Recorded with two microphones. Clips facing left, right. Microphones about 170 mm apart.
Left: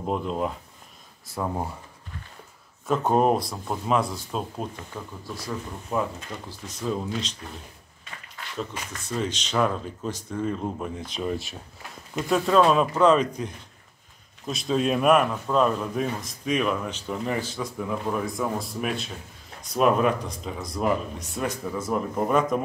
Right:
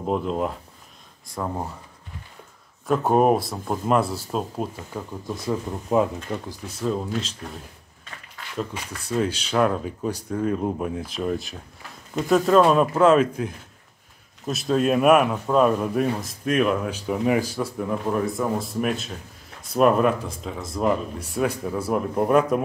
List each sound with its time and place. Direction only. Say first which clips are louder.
0.0 s speech: right 3 dB; centre (ahead or behind)
2.9 s speech: right 3 dB; 5° right (ahead or behind)
5.3 s speech: right 7 dB; 25° right (ahead or behind)
6.5 s speech: right 1 dB; 5° right (ahead or behind)
8.5 s speech: right 3 dB; 10° right (ahead or behind)